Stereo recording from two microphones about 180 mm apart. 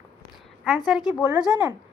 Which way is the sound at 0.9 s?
Centre (ahead or behind).